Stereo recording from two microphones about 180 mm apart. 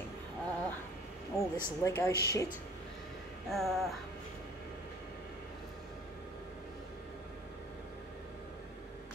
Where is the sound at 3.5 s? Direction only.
Centre (ahead or behind).